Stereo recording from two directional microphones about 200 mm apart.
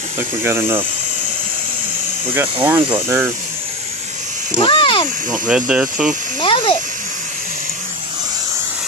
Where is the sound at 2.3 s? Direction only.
10° right (ahead or behind).